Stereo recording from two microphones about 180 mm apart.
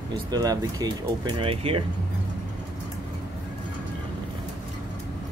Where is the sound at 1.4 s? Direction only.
30° right (ahead or behind).